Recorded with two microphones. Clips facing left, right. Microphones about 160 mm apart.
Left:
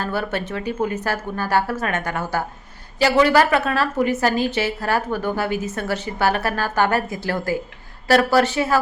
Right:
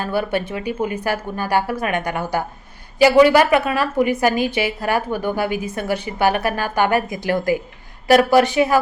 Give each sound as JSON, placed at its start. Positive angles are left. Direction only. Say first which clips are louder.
{"t": 0.0, "sound": "a woman's voice", "louder": "right 3 dB", "side_deg": -15}